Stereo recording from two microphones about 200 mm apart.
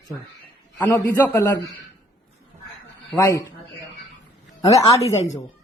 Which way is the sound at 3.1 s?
15° left (ahead or behind).